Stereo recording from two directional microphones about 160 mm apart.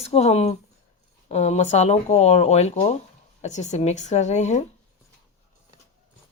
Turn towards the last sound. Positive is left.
turn(degrees=45)  # may be behind; listen again after turning